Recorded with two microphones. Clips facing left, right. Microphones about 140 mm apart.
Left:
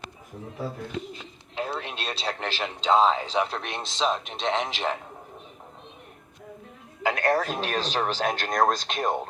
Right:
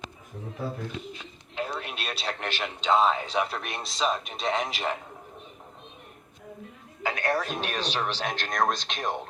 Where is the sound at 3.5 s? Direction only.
25° left (ahead or behind).